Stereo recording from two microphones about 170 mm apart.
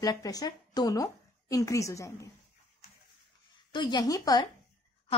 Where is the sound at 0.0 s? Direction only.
20° left (ahead or behind).